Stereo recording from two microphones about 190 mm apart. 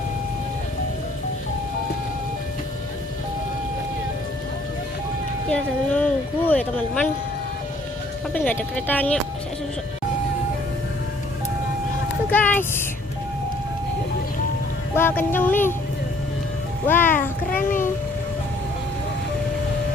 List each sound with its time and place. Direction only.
5.5 s speech: 5° left (ahead or behind)
8.3 s speech: 10° left (ahead or behind)
12.3 s speech: 10° left (ahead or behind)
14.9 s speech: 10° left (ahead or behind)
16.8 s speech: 10° left (ahead or behind)
17.6 s music: 45° left (ahead or behind)